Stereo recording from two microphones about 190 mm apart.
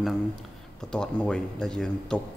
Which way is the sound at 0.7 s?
5° left (ahead or behind).